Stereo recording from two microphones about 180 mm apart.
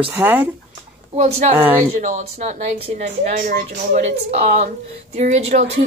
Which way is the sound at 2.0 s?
45° right (ahead or behind).